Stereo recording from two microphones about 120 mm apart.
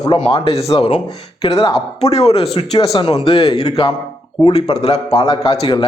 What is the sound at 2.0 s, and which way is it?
A man's voice, 60° left (ahead or behind).